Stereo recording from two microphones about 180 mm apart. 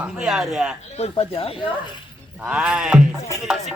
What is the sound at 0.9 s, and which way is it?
Speech, 35° left (ahead or behind).